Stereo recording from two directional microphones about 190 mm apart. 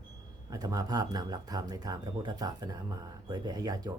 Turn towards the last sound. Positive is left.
turn(degrees=-20)  # may be behind; listen again after turning